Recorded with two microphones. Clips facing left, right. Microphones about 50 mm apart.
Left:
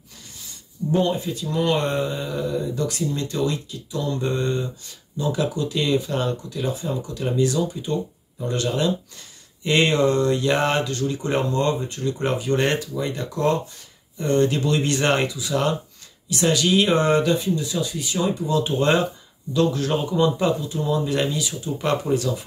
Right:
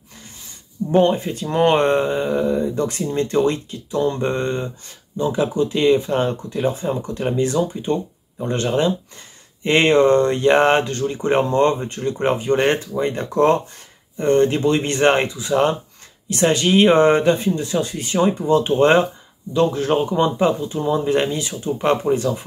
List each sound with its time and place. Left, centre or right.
0.9 s speech: right